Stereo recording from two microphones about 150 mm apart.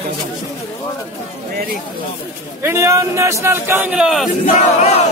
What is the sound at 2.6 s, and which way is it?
A man's voice, 15° right (ahead or behind).